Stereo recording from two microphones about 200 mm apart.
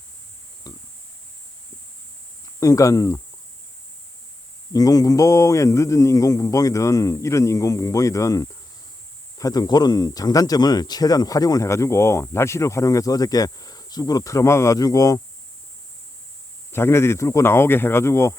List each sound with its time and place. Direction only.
0.7 s a sound: 20° left (ahead or behind)
2.6 s speech: 15° left (ahead or behind)
4.7 s speech: 20° left (ahead or behind)
16.7 s speech: 10° left (ahead or behind)